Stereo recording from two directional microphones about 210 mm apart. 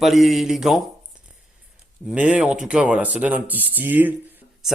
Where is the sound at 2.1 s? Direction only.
5° right (ahead or behind).